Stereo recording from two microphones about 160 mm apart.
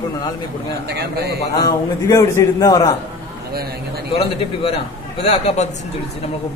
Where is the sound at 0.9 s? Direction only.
90° right.